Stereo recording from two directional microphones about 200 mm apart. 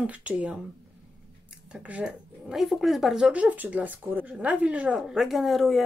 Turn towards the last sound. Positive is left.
turn(degrees=0)  # may be behind; listen again after turning